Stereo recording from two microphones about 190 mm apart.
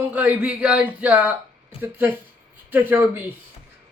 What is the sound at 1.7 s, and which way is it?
Speech, 30° left (ahead or behind).